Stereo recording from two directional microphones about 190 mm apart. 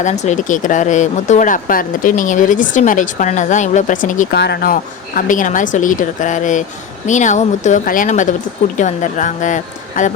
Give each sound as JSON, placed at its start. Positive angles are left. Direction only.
{"t": 0.0, "sound": "speech", "side_deg": 40}
{"t": 4.4, "sound": "speech", "side_deg": 55}